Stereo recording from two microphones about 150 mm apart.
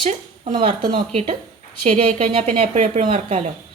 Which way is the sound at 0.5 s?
30° right (ahead or behind).